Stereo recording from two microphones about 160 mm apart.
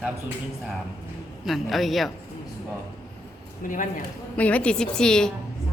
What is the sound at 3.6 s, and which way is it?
Speech, 55° left (ahead or behind).